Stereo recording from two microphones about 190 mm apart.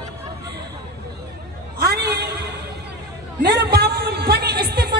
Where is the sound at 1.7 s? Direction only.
55° right (ahead or behind).